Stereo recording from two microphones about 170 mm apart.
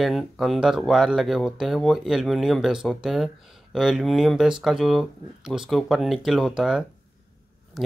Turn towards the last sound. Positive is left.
turn(degrees=0)  # may be behind; listen again after turning